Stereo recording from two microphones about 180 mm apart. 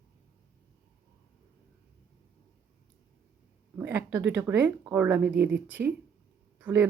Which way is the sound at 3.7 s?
10° right (ahead or behind).